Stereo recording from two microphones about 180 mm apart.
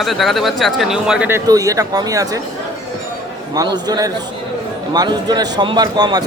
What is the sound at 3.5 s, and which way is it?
A man's voice, 20° right (ahead or behind).